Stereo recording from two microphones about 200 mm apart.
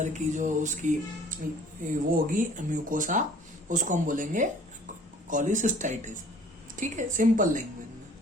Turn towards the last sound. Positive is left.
turn(degrees=-40)  # may be behind; listen again after turning